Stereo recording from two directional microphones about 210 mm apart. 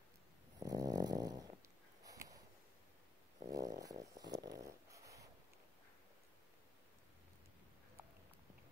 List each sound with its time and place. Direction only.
0.6 s dog: 15° right (ahead or behind)
2.0 s a sound: 15° right (ahead or behind)
3.4 s dog: 15° right (ahead or behind)